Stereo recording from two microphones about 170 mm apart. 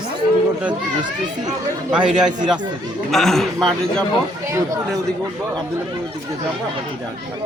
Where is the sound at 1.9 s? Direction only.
5° right (ahead or behind).